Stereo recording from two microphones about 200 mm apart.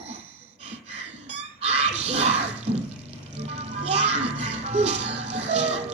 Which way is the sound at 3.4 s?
30° right (ahead or behind).